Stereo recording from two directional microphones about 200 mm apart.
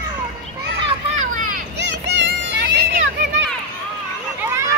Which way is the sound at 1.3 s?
45° right (ahead or behind).